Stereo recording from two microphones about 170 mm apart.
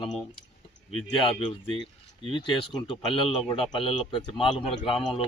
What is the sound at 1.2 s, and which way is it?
Speech, 30° left (ahead or behind).